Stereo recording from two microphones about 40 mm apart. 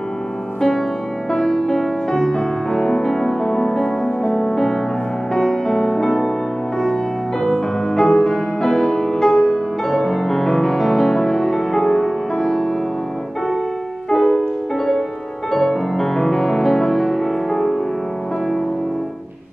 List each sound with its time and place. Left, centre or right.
0.6 s music: centre
7.4 s music: centre
14.1 s music: left
15.5 s music: centre